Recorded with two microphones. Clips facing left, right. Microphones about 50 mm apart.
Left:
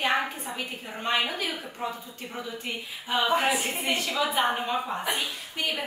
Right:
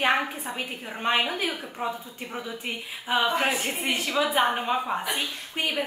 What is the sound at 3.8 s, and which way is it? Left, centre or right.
A woman's voice, centre.